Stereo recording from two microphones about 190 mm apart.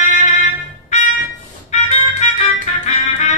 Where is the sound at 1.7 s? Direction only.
40° left (ahead or behind).